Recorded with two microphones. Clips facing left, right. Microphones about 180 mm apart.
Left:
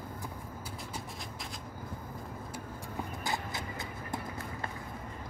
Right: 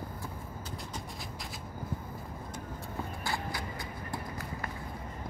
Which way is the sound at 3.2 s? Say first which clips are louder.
Right 1 dB; 20° left (ahead or behind).